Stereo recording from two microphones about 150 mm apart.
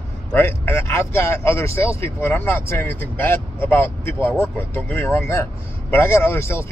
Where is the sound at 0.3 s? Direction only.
15° left (ahead or behind).